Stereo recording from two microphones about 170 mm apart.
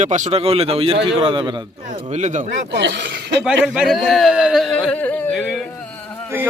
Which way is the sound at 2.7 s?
90° right.